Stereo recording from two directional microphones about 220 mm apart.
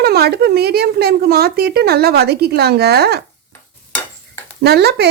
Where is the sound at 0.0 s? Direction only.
45° right (ahead or behind).